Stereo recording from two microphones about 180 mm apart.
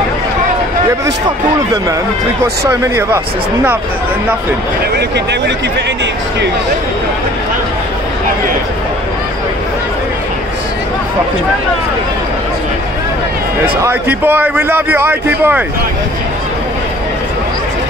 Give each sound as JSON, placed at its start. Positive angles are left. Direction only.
{"t": 2.6, "sound": "a man's voice", "side_deg": -15}
{"t": 13.8, "sound": "a man's voice", "side_deg": -10}